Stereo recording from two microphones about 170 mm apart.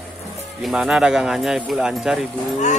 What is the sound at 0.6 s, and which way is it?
Speech, centre (ahead or behind).